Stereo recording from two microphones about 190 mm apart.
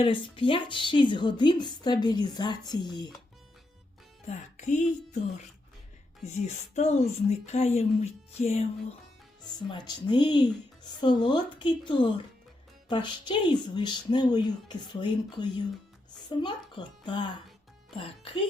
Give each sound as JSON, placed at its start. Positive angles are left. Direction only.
{"t": 0.0, "sound": "a woman's voice", "side_deg": 25}
{"t": 4.3, "sound": "a woman's voice", "side_deg": 40}
{"t": 6.4, "sound": "a woman's voice", "side_deg": 35}
{"t": 9.4, "sound": "a woman's voice", "side_deg": 20}